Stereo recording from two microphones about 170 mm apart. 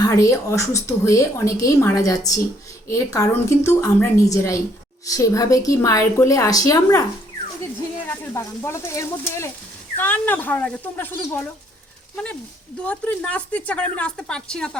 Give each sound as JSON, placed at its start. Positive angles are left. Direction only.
{"t": 0.0, "sound": "a woman's voice", "side_deg": 20}
{"t": 8.0, "sound": "a woman's voice", "side_deg": 10}